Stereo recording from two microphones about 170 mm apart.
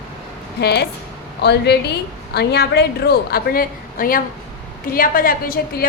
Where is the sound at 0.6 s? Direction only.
70° left (ahead or behind).